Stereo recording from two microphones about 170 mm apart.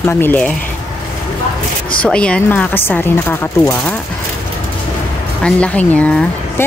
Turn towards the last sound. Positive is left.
turn(degrees=10)  # may be behind; listen again after turning